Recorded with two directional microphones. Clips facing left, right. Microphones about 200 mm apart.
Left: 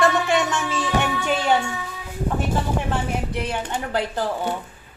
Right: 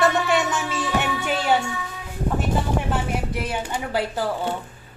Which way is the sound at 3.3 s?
5° right (ahead or behind).